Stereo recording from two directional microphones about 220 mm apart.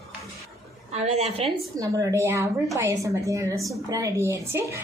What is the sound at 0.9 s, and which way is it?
Speech, 30° right (ahead or behind).